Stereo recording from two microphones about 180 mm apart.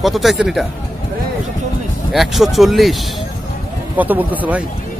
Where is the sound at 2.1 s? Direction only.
Centre (ahead or behind).